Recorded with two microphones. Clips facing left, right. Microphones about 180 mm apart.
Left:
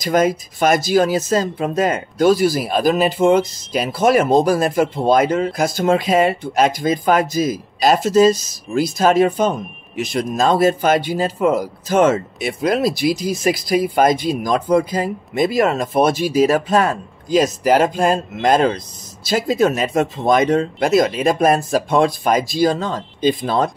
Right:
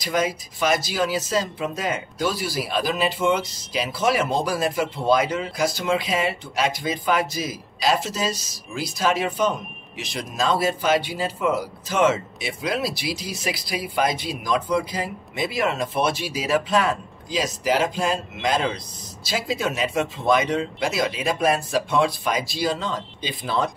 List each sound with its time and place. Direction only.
0.0 s speech: 50° left (ahead or behind)